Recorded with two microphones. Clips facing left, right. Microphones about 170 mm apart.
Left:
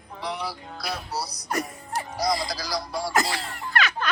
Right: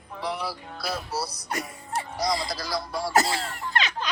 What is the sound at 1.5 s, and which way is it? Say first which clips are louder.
Speech: left 4 dB; 40° left (ahead or behind).